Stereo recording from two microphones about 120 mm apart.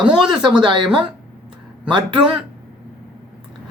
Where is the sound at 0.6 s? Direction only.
40° right (ahead or behind).